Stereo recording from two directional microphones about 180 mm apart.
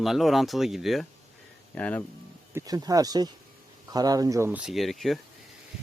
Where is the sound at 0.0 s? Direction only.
Centre (ahead or behind).